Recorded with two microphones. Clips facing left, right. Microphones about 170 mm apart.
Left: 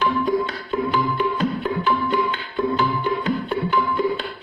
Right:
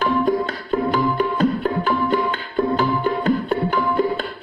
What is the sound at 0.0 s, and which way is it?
Music, 45° right (ahead or behind).